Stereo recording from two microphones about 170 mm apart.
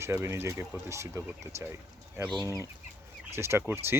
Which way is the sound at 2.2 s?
15° right (ahead or behind).